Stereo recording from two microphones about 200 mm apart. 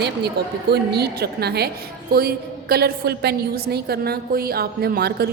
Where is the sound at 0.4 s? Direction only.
55° right (ahead or behind).